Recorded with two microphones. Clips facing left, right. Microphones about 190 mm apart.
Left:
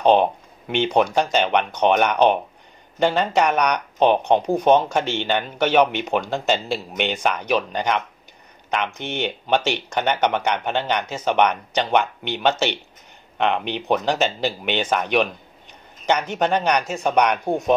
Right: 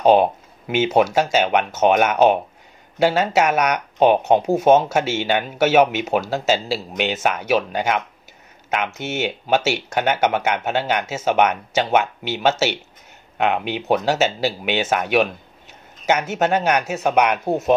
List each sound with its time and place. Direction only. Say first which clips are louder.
0.0 s speech: right 2 dB; 5° right (ahead or behind)